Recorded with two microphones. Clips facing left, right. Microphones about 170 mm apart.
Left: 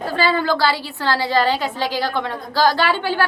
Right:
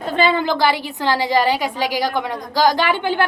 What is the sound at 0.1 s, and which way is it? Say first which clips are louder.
A woman's voice: right 2 dB; 20° right (ahead or behind).